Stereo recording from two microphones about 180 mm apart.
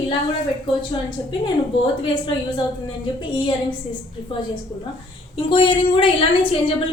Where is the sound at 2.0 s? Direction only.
25° left (ahead or behind).